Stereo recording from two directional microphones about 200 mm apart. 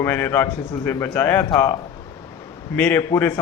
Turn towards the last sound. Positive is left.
turn(degrees=15)  # may be behind; listen again after turning